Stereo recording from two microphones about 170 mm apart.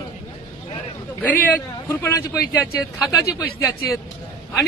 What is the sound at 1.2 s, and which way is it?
A man's voice, 10° left (ahead or behind).